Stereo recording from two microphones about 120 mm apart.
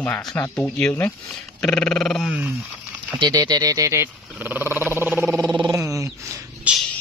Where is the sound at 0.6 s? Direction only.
10° left (ahead or behind).